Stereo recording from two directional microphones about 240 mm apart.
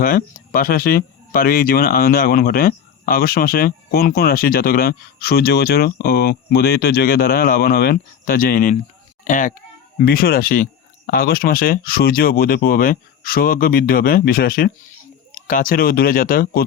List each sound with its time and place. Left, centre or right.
0.0 s a child's voice: left